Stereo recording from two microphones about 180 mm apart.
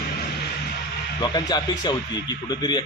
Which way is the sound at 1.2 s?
25° left (ahead or behind).